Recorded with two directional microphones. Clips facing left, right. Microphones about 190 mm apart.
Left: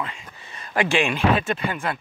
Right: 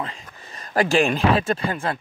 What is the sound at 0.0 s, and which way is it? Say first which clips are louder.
Speech: right 1 dB; 40° right (ahead or behind).